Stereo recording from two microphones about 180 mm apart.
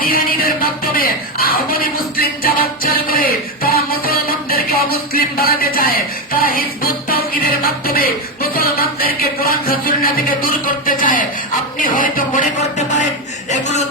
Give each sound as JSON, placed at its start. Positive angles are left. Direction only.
{"t": 0.0, "sound": "a sound", "side_deg": 55}
{"t": 7.1, "sound": "music", "side_deg": 55}
{"t": 11.8, "sound": "speech", "side_deg": 50}